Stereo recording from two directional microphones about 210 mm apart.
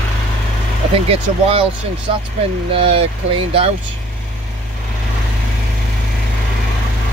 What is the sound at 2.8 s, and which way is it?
Speech, 25° right (ahead or behind).